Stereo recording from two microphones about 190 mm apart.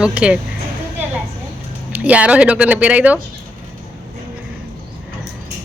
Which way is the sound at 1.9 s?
10° right (ahead or behind).